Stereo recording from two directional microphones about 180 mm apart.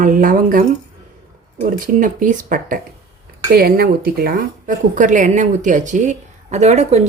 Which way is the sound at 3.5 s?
55° right (ahead or behind).